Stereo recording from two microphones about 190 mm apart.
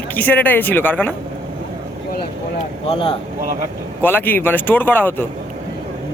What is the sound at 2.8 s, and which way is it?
Speech, 30° left (ahead or behind).